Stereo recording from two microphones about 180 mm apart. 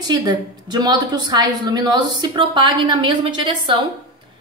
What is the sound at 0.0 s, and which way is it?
A woman's voice, 25° right (ahead or behind).